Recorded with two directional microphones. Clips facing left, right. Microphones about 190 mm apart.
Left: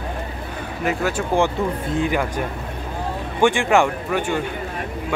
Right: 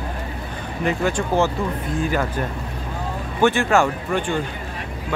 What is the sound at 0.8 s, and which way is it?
Speech, 5° left (ahead or behind).